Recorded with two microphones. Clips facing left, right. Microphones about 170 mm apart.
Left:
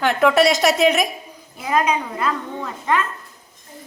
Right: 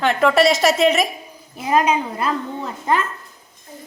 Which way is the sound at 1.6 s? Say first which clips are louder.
Right 2 dB; 25° right (ahead or behind).